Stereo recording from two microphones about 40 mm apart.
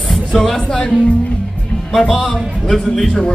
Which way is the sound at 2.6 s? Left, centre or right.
Centre.